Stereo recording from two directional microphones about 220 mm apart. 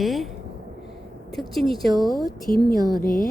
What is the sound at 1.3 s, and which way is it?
Speech, centre (ahead or behind).